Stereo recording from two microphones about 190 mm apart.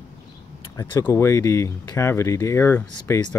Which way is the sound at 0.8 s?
20° left (ahead or behind).